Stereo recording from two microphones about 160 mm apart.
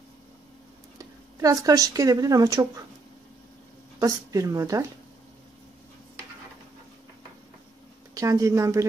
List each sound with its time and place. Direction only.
0.9 s speech: 20° right (ahead or behind)
4.0 s speech: 20° right (ahead or behind)
8.1 s a woman's voice: 20° right (ahead or behind)